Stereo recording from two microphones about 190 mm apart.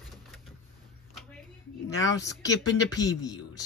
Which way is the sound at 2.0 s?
15° left (ahead or behind).